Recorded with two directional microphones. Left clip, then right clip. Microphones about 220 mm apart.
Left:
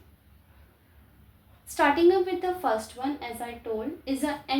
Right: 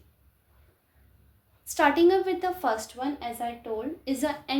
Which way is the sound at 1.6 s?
50° right (ahead or behind).